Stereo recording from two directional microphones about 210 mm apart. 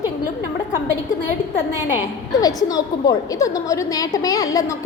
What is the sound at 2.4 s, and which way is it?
A woman's voice, 15° left (ahead or behind).